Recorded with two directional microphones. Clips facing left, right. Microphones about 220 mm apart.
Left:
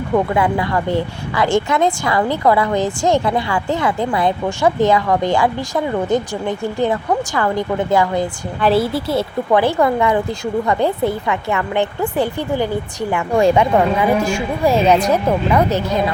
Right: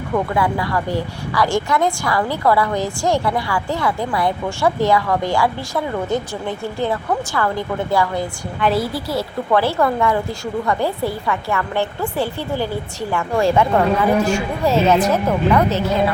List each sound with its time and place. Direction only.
0.3 s a woman's voice: 20° left (ahead or behind)